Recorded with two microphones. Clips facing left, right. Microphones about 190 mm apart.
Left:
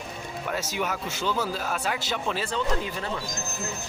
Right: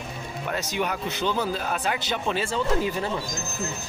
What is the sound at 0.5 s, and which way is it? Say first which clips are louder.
Speech: right 2 dB; 5° left (ahead or behind).